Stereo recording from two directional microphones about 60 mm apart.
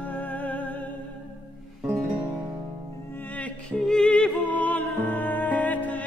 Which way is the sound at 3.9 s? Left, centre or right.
Centre.